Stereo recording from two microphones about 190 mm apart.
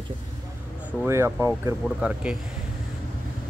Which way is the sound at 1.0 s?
15° right (ahead or behind).